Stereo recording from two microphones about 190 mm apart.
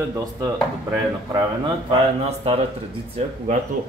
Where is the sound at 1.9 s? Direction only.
30° right (ahead or behind).